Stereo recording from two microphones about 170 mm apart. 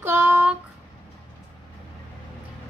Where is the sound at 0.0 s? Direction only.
10° right (ahead or behind).